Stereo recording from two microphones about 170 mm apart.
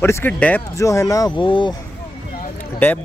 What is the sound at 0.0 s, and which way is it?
Speech, 15° left (ahead or behind).